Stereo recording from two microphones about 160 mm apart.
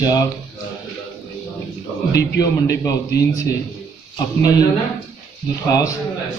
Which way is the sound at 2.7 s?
20° left (ahead or behind).